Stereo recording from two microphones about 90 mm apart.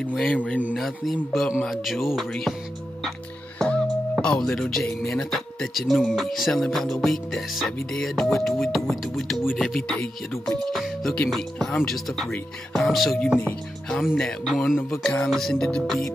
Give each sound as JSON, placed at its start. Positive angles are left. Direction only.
{"t": 0.0, "sound": "speech", "side_deg": 10}
{"t": 0.7, "sound": "speech", "side_deg": 0}
{"t": 3.5, "sound": "music", "side_deg": 10}
{"t": 4.2, "sound": "speech", "side_deg": 10}
{"t": 13.4, "sound": "speech", "side_deg": 10}
{"t": 14.4, "sound": "speech", "side_deg": 0}